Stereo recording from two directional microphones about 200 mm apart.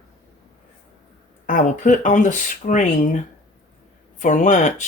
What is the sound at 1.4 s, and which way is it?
Speech, 40° left (ahead or behind).